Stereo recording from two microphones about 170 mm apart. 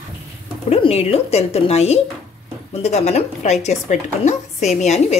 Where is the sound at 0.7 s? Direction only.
35° left (ahead or behind).